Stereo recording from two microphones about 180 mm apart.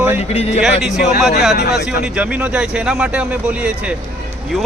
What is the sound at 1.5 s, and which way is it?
Speech, 60° left (ahead or behind).